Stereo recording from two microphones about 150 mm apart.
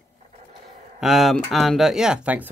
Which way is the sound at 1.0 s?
Centre (ahead or behind).